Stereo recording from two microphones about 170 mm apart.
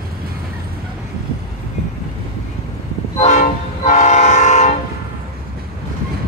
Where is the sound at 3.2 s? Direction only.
45° left (ahead or behind).